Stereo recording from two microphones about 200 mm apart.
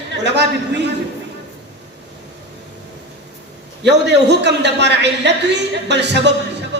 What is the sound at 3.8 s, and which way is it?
A man's voice, 60° right (ahead or behind).